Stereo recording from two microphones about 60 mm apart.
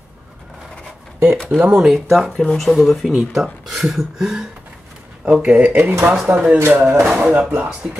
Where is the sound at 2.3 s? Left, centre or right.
Centre.